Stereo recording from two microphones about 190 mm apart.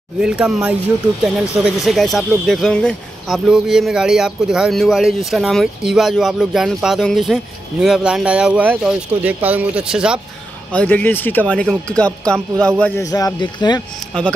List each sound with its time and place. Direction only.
0.2 s speech: 5° right (ahead or behind)
10.7 s speech: 5° left (ahead or behind)
13.0 s speech: 20° left (ahead or behind)